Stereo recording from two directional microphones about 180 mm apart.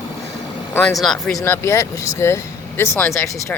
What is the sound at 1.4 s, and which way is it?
Speech, 15° left (ahead or behind).